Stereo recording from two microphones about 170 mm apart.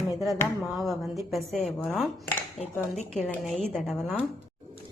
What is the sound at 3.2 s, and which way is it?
A woman's voice, 10° left (ahead or behind).